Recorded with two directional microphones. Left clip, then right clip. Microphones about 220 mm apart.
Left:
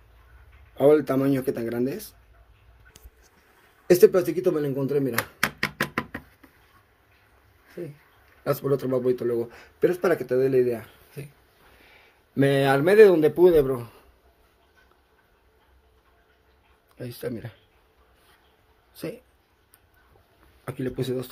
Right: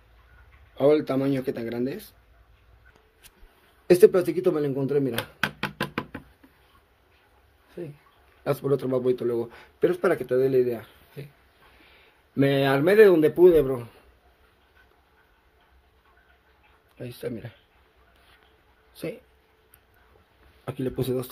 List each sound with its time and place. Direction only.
0.7 s speech: 10° left (ahead or behind)
3.8 s speech: centre (ahead or behind)
7.8 s speech: 5° left (ahead or behind)
10.6 s speech: 15° left (ahead or behind)
11.9 s speech: centre (ahead or behind)
17.0 s speech: 5° left (ahead or behind)
18.9 s speech: centre (ahead or behind)
20.6 s speech: 20° right (ahead or behind)